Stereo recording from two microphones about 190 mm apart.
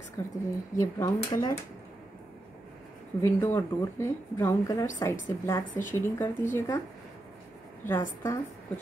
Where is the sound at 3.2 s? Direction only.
10° left (ahead or behind).